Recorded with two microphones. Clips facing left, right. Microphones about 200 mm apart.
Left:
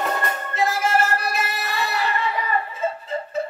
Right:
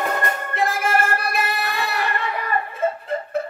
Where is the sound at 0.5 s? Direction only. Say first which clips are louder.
Left 1 dB; 55° right (ahead or behind).